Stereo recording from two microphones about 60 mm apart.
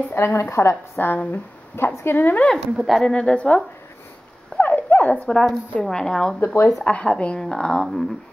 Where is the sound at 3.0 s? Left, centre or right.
Centre.